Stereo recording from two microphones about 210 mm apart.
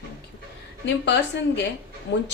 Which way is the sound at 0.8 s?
55° left (ahead or behind).